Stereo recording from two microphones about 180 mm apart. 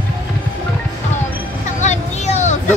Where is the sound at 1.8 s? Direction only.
40° left (ahead or behind).